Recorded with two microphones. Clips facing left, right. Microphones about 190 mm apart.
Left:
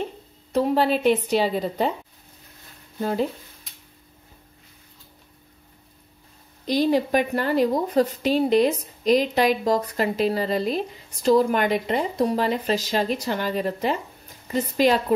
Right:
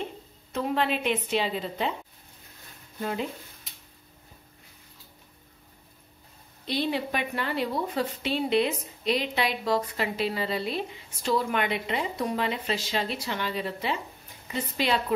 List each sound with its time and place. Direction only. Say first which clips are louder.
0.5 s a woman's voice: left 7 dB; 35° left (ahead or behind)
3.0 s speech: left 7 dB; 35° left (ahead or behind)
6.6 s a woman's voice: left 8 dB; 40° left (ahead or behind)